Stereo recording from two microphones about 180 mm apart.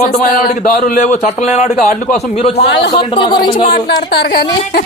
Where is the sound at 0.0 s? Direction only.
55° left (ahead or behind); by 2.6 s 35° left (ahead or behind).